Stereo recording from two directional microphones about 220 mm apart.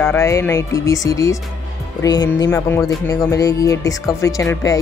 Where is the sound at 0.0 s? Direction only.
10° left (ahead or behind).